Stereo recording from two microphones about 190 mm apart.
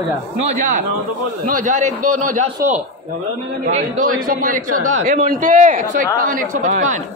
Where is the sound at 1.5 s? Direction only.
45° right (ahead or behind).